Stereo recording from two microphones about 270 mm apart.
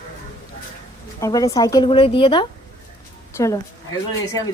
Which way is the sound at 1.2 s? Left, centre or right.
Centre.